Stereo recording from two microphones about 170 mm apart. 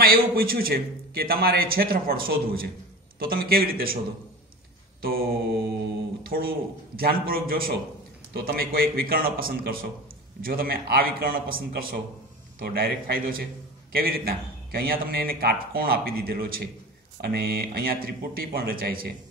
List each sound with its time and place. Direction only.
0.0 s a man's voice: 60° right (ahead or behind)
6.2 s a man's voice: 60° right (ahead or behind)